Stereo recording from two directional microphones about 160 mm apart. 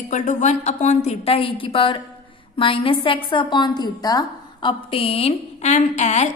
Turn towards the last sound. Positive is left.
turn(degrees=45)  # may be behind; listen again after turning